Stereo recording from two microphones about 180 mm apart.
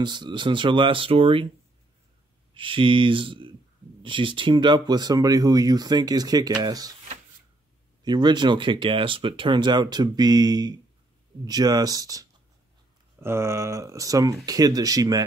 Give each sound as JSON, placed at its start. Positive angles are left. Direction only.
{"t": 0.0, "sound": "speech", "side_deg": -25}
{"t": 2.5, "sound": "speech", "side_deg": -30}
{"t": 8.0, "sound": "speech", "side_deg": -25}